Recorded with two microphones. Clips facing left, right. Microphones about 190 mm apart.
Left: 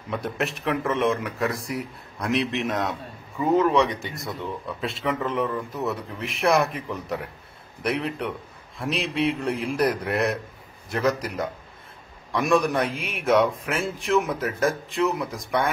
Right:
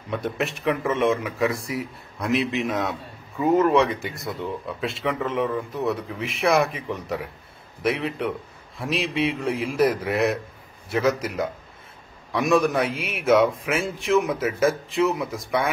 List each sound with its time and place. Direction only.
0.1 s speech: centre (ahead or behind)